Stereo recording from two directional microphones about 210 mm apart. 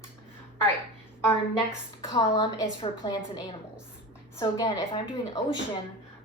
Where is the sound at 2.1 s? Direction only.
25° left (ahead or behind).